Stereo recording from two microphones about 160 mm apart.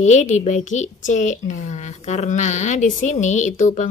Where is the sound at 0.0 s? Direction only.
45° left (ahead or behind).